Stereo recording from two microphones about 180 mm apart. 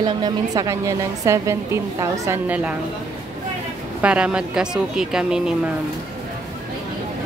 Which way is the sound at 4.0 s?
5° right (ahead or behind).